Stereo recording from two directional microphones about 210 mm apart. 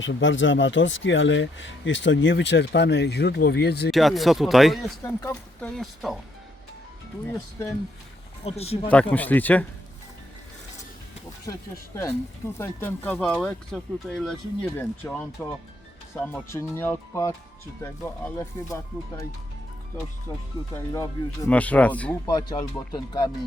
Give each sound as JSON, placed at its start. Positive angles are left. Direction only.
{"t": 0.0, "sound": "speech", "side_deg": 65}
{"t": 3.9, "sound": "speech", "side_deg": 0}
{"t": 7.3, "sound": "speech", "side_deg": 15}
{"t": 8.4, "sound": "speech", "side_deg": 30}
{"t": 8.9, "sound": "speech", "side_deg": 5}
{"t": 12.5, "sound": "speech", "side_deg": 10}
{"t": 20.7, "sound": "speech", "side_deg": 15}
{"t": 22.3, "sound": "speech", "side_deg": 20}